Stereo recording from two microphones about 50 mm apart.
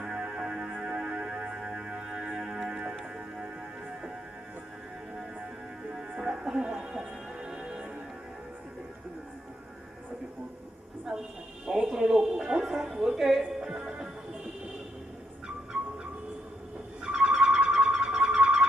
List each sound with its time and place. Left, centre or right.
0.0 s music: centre
5.9 s music: centre
11.6 s music: centre
17.1 s music: centre